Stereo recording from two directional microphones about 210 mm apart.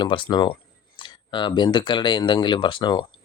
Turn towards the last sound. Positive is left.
turn(degrees=20)  # may be behind; listen again after turning